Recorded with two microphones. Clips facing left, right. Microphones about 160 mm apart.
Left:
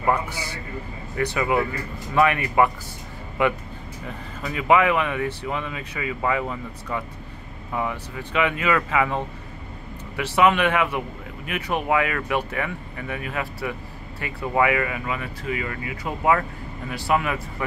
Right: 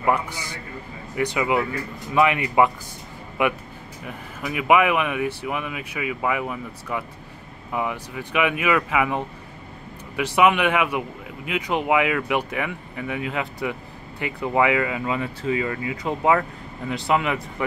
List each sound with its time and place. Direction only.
0.0 s a man's voice: 15° right (ahead or behind)